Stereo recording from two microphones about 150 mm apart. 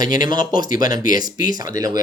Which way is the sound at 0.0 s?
25° right (ahead or behind).